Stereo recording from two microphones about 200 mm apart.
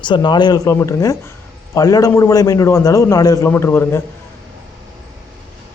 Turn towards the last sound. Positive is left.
turn(degrees=10)  # may be behind; listen again after turning